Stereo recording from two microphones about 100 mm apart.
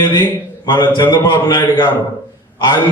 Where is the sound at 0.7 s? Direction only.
50° left (ahead or behind).